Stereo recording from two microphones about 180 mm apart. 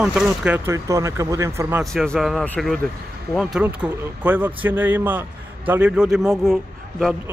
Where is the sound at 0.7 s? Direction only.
15° right (ahead or behind).